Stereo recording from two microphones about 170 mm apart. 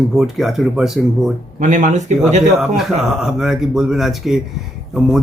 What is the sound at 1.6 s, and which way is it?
Speech, 45° right (ahead or behind).